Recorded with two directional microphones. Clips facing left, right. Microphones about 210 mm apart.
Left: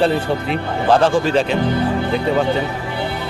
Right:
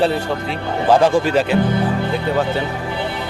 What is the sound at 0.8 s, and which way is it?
Speech, 10° right (ahead or behind).